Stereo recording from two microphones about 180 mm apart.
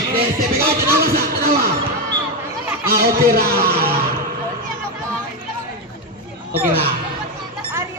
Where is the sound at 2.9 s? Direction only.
60° right (ahead or behind).